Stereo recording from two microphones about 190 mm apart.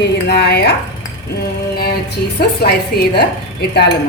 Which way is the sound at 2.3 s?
55° left (ahead or behind).